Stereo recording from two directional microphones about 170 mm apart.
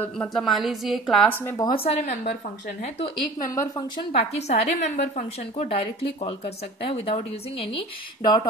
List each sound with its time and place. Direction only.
0.0 s a woman's voice: 5° left (ahead or behind)
1.3 s speech: 15° left (ahead or behind)
1.7 s a woman's voice: 35° left (ahead or behind)
3.3 s speech: 20° left (ahead or behind)
4.1 s a woman's voice: 40° left (ahead or behind)